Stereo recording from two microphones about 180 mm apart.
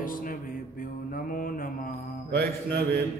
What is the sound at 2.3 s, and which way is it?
Mantra, 60° right (ahead or behind).